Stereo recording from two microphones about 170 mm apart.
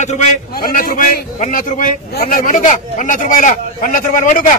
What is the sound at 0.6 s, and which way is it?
A man's voice, 55° left (ahead or behind).